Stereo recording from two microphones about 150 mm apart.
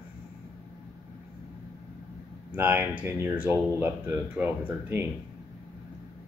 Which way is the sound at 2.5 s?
10° right (ahead or behind).